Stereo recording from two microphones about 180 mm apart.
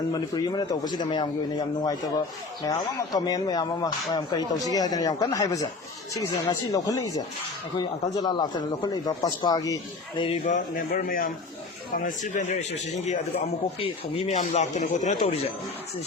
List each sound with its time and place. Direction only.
0.1 s speech: 20° left (ahead or behind)
10.4 s speech: 45° left (ahead or behind)